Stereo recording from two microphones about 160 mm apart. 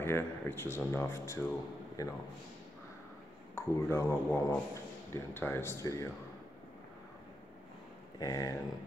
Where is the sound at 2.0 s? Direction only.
20° left (ahead or behind).